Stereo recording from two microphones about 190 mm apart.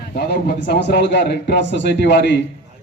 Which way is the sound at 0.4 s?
55° left (ahead or behind).